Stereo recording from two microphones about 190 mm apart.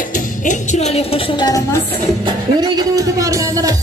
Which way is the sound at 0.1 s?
40° left (ahead or behind).